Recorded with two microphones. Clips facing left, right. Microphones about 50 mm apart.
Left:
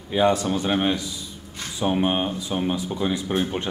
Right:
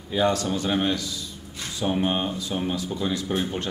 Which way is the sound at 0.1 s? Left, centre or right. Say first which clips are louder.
Left 3 dB; centre.